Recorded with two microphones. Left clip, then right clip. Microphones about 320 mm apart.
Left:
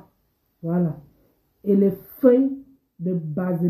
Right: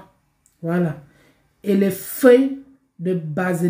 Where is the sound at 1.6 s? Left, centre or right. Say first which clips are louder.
Even; right.